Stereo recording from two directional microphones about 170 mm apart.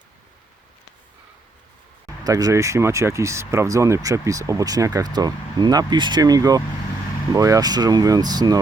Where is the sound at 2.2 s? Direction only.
20° right (ahead or behind).